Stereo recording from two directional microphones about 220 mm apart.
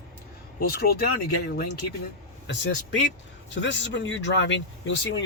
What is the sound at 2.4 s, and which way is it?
Speech, 55° left (ahead or behind).